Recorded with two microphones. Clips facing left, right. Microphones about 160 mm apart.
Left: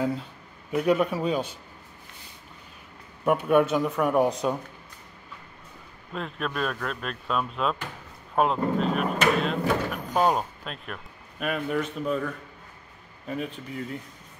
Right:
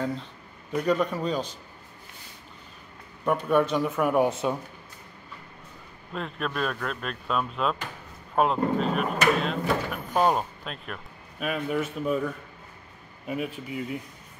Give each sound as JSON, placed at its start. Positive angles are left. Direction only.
{"t": 0.7, "sound": "a man's voice", "side_deg": 5}
{"t": 3.3, "sound": "speech", "side_deg": 10}
{"t": 6.1, "sound": "speech", "side_deg": 0}
{"t": 13.3, "sound": "speech", "side_deg": -10}